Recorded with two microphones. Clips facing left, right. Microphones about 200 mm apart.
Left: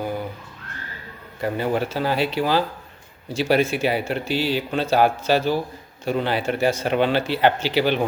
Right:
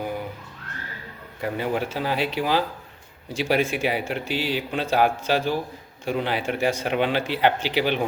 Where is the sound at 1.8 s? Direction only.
15° right (ahead or behind).